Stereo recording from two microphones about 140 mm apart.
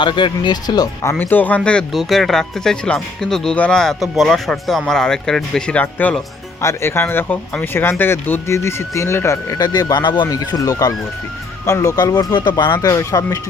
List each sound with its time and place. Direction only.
0.0 s speech: 35° left (ahead or behind)
1.2 s speech: 15° left (ahead or behind)